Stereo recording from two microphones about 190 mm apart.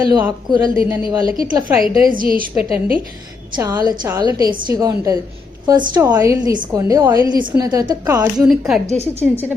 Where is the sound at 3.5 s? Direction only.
20° right (ahead or behind).